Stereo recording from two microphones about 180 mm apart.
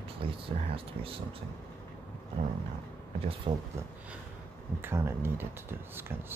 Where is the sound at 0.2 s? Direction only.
30° right (ahead or behind).